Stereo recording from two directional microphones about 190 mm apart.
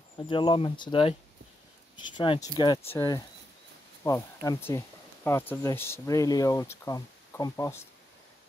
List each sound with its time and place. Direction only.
0.3 s speech: 25° left (ahead or behind)
2.1 s speech: 25° left (ahead or behind)